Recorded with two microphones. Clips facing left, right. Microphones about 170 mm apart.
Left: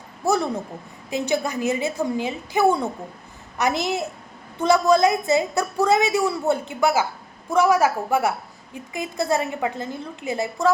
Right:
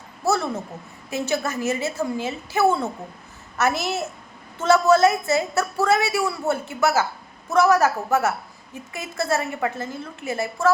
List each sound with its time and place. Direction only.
0.3 s a woman's voice: 15° left (ahead or behind)